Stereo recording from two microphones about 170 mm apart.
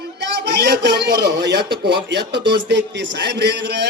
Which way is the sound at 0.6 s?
75° right (ahead or behind).